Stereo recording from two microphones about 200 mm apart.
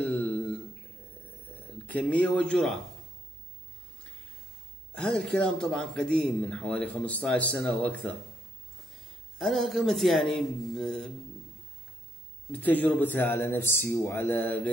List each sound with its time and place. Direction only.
0.0 s a sound: 10° left (ahead or behind)
1.5 s a man's voice: 10° left (ahead or behind)
4.9 s a man's voice: 5° left (ahead or behind)
9.4 s a man's voice: centre (ahead or behind)
12.4 s speech: 10° left (ahead or behind)